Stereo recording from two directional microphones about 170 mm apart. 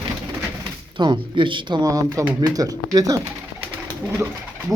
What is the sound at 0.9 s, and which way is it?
Speech, 25° right (ahead or behind).